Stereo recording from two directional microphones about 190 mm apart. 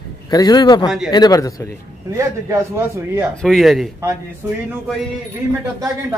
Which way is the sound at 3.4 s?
Centre (ahead or behind).